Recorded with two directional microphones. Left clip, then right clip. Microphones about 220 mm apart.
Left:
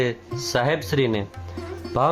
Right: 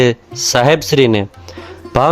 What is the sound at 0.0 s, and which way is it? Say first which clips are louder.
A man's voice: right 11 dB; 40° right (ahead or behind).